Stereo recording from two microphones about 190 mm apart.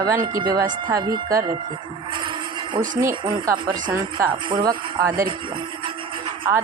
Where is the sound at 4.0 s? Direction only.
10° right (ahead or behind).